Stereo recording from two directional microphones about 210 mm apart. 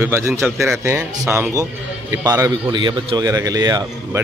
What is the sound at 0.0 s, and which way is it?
A man's voice, 10° right (ahead or behind).